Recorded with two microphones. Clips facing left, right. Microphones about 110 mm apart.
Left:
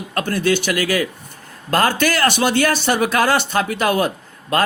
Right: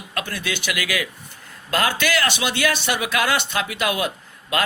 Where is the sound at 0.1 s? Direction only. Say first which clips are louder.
Left 9 dB; 45° left (ahead or behind).